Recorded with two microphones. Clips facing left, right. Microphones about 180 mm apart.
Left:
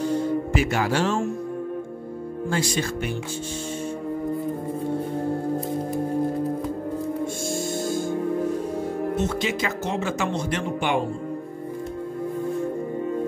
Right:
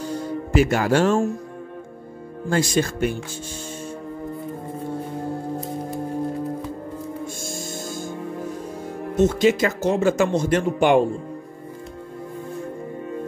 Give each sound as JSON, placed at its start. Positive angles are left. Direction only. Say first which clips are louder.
{"t": 0.5, "sound": "speech", "louder": "right 4 dB", "side_deg": -45}
{"t": 2.5, "sound": "speech", "louder": "right 5 dB", "side_deg": -45}
{"t": 9.1, "sound": "speech", "louder": "right 13 dB", "side_deg": -45}